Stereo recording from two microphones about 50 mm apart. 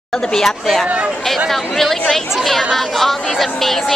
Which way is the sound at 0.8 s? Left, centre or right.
Right.